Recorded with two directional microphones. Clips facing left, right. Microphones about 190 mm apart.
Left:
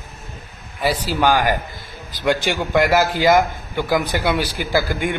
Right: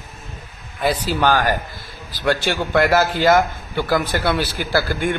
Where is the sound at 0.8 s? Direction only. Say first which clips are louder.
Even; 10° left (ahead or behind).